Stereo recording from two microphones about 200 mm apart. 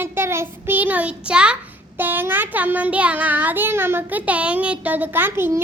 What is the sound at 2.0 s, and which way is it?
Child singing, 10° right (ahead or behind).